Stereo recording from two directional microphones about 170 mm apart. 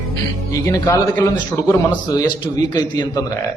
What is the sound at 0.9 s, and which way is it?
A man's voice, 20° left (ahead or behind).